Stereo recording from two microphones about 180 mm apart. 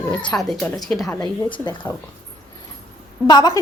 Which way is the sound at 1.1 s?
25° left (ahead or behind).